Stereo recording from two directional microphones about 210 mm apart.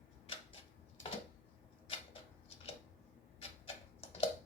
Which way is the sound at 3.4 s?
30° left (ahead or behind).